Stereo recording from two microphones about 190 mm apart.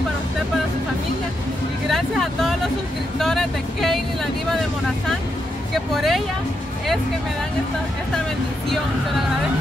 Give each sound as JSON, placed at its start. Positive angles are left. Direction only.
{"t": 1.9, "sound": "speech", "side_deg": 0}
{"t": 5.9, "sound": "speech", "side_deg": 0}